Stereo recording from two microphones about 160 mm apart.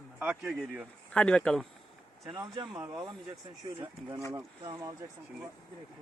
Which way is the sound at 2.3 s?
25° right (ahead or behind).